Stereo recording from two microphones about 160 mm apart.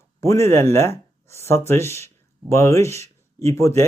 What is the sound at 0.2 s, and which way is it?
Speech, 15° left (ahead or behind).